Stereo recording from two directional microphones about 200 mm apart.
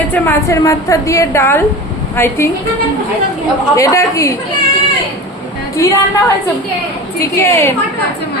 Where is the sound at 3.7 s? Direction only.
15° left (ahead or behind).